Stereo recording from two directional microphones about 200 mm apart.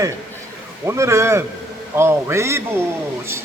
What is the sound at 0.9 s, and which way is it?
Speech, 15° right (ahead or behind).